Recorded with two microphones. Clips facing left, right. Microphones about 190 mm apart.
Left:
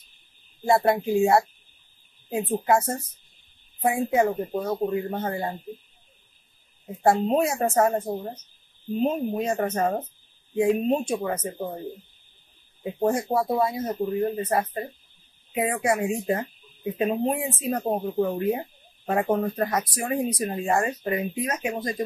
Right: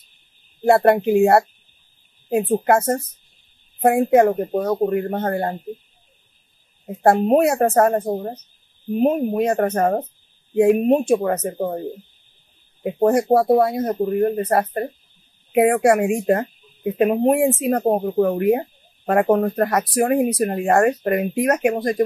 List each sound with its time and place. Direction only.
0.7 s speech: 65° right (ahead or behind)
7.0 s speech: 55° right (ahead or behind)
8.1 s speech: 40° right (ahead or behind)
8.9 s speech: 60° right (ahead or behind)
12.8 s speech: 65° right (ahead or behind)